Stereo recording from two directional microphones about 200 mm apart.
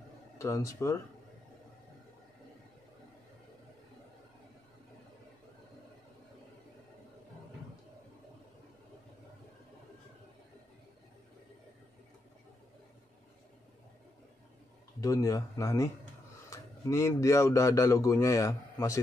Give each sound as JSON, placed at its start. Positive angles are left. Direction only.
{"t": 0.4, "sound": "speech", "side_deg": 15}
{"t": 15.0, "sound": "speech", "side_deg": 15}